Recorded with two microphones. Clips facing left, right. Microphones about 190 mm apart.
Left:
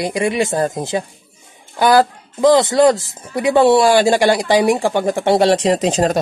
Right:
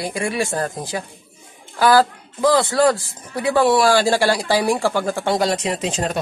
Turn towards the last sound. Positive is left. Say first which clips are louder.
# left 8 dB
turn(degrees=40)  # may be behind; listen again after turning